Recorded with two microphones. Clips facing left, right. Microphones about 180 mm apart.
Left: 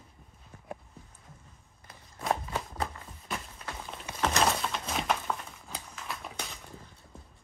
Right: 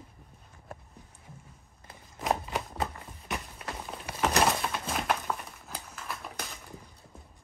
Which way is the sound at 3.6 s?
5° right (ahead or behind).